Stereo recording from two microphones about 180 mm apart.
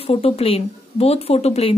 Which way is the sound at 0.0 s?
35° left (ahead or behind).